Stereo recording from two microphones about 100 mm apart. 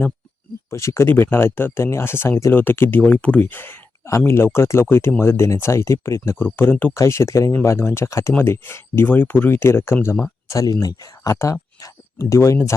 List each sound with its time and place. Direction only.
0.7 s speech: 30° left (ahead or behind); by 3.4 s 15° left (ahead or behind)
3.4 s a sound: 20° left (ahead or behind)
4.2 s speech: 25° left (ahead or behind)
6.4 s speech: 20° left (ahead or behind)